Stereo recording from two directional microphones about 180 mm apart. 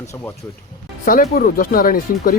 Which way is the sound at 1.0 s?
50° left (ahead or behind).